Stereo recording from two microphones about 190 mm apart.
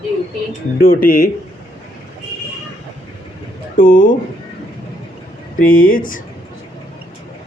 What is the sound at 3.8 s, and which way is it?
Speech, 45° left (ahead or behind).